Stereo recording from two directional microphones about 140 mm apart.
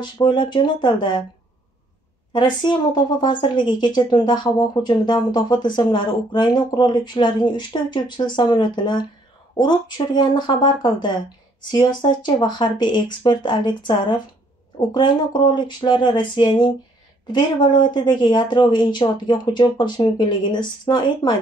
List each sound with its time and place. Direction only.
0.0 s speech: 30° left (ahead or behind)
2.3 s speech: 30° left (ahead or behind)